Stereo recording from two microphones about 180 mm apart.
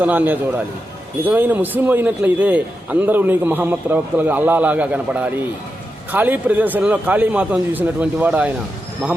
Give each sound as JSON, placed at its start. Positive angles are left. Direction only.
{"t": 0.0, "sound": "a man's voice", "side_deg": -10}